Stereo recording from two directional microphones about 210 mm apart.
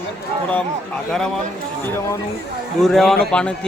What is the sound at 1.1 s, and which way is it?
Speech, centre (ahead or behind).